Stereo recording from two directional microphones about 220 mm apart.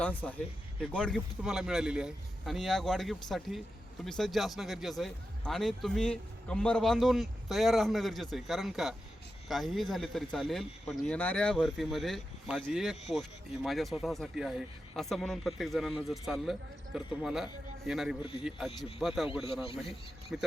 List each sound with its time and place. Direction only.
0.0 s a man's voice: 5° left (ahead or behind)
20.3 s a man's voice: 5° right (ahead or behind)